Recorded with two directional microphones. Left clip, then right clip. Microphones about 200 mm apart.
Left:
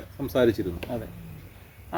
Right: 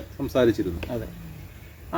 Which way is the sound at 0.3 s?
15° left (ahead or behind).